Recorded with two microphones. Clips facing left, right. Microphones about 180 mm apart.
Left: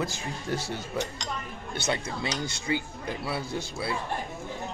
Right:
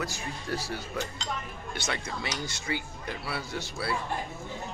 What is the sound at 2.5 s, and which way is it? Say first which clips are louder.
Speech: left 4 dB; 30° left (ahead or behind).